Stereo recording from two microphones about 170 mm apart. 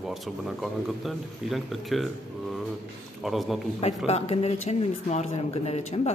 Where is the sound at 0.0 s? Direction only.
Centre (ahead or behind).